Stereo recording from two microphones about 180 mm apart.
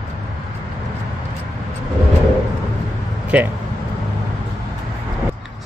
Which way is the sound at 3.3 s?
5° right (ahead or behind).